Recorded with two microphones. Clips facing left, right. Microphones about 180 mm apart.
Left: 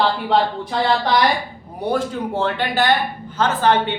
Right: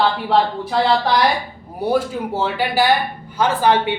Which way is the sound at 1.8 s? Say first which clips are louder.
Right 2 dB; 10° right (ahead or behind).